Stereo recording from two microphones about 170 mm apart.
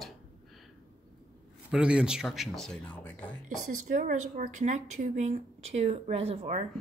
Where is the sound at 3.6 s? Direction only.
45° right (ahead or behind).